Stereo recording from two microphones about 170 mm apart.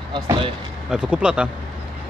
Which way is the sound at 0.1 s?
25° right (ahead or behind).